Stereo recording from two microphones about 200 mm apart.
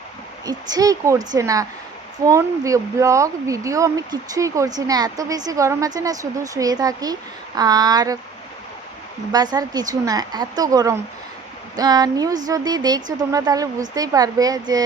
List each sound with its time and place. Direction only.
0.4 s speech: 20° right (ahead or behind)
9.3 s a woman's voice: 20° right (ahead or behind)